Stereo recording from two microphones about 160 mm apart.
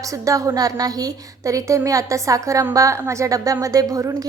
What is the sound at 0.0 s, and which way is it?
A woman's voice, 20° right (ahead or behind).